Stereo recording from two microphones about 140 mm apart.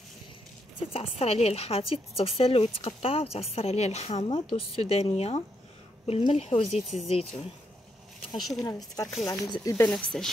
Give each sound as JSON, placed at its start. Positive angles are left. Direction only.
{"t": 0.9, "sound": "a woman's voice", "side_deg": 45}
{"t": 8.4, "sound": "speech", "side_deg": 0}
{"t": 8.6, "sound": "speech", "side_deg": 25}
{"t": 9.8, "sound": "speech", "side_deg": 5}